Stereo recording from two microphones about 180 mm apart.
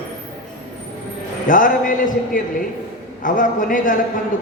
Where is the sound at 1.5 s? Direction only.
50° left (ahead or behind).